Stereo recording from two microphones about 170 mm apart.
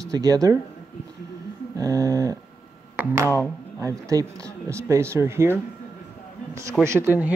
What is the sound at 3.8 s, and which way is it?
Speech, 20° right (ahead or behind).